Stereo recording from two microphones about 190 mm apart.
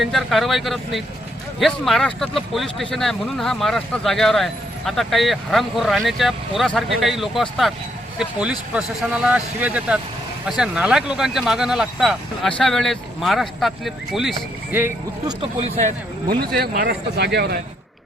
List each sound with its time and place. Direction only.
0.0 s speech: centre (ahead or behind)
15.3 s speech: 25° right (ahead or behind)
16.6 s speech: 55° right (ahead or behind)